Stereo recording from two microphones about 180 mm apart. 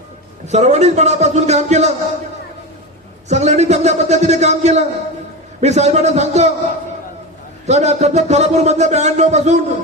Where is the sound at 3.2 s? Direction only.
40° right (ahead or behind).